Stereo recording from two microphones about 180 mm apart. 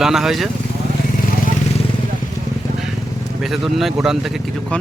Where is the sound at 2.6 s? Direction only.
20° left (ahead or behind).